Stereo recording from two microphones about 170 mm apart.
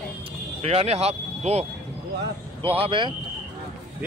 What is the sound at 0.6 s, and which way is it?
Speech, 35° right (ahead or behind).